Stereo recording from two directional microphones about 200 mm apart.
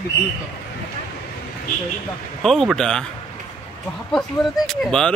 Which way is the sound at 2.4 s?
Centre (ahead or behind).